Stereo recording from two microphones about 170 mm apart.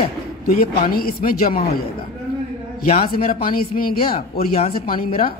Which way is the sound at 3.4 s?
60° left (ahead or behind).